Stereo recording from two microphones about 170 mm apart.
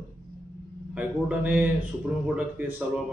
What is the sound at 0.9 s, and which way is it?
A man's voice, 10° right (ahead or behind).